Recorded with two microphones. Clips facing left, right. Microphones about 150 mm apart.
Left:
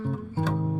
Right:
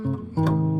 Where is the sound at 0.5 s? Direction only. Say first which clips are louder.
Right 5 dB; 20° right (ahead or behind).